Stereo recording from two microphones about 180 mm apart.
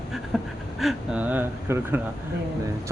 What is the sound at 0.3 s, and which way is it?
Pant, centre (ahead or behind).